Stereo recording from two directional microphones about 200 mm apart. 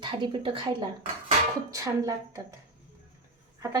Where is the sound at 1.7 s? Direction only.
15° right (ahead or behind).